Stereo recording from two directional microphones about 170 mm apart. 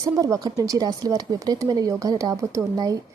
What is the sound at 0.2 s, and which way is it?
Speech, 20° right (ahead or behind).